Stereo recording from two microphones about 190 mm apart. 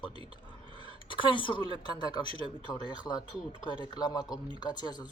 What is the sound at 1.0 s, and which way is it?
Speech, 25° left (ahead or behind).